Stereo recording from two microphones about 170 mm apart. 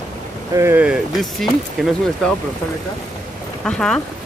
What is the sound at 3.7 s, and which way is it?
Speech, 5° left (ahead or behind).